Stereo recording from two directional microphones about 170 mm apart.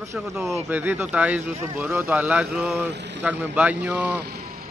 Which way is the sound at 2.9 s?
90° right.